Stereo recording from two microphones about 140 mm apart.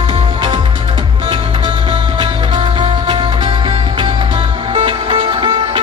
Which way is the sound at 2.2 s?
40° right (ahead or behind).